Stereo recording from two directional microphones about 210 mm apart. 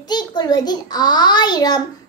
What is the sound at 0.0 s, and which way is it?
A child's voice, 20° left (ahead or behind).